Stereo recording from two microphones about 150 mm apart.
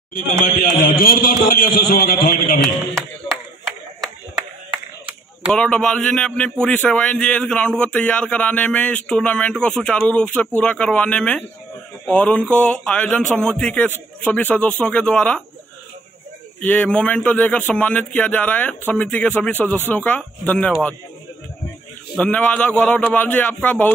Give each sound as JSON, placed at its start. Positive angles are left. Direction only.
{"t": 0.7, "sound": "a man's voice", "side_deg": 75}
{"t": 3.0, "sound": "a sound", "side_deg": 5}
{"t": 5.5, "sound": "a man's voice", "side_deg": 5}
{"t": 16.6, "sound": "a man's voice", "side_deg": 10}
{"t": 22.1, "sound": "a man's voice", "side_deg": 10}